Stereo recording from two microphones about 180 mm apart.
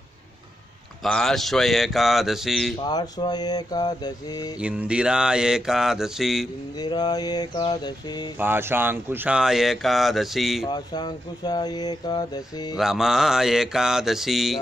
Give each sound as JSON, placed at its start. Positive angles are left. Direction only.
{"t": 1.0, "sound": "speech", "side_deg": 0}
{"t": 2.8, "sound": "speech", "side_deg": 25}
{"t": 4.6, "sound": "speech", "side_deg": -5}
{"t": 6.8, "sound": "speech", "side_deg": 25}
{"t": 8.4, "sound": "speech", "side_deg": -10}
{"t": 10.7, "sound": "speech", "side_deg": 25}
{"t": 12.7, "sound": "speech", "side_deg": 0}